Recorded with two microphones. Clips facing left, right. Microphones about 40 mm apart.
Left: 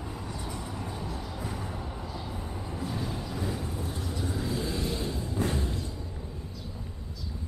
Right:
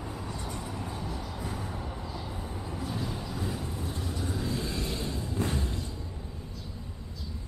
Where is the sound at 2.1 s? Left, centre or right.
Centre.